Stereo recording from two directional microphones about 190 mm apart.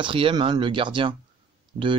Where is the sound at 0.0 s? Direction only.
25° right (ahead or behind).